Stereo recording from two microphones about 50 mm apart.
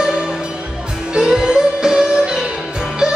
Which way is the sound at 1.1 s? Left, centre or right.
Centre.